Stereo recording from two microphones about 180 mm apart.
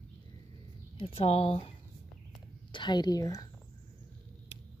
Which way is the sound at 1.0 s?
35° left (ahead or behind).